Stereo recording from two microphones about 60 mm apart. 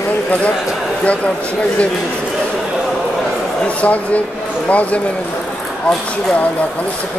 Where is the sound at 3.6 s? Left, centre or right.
Left.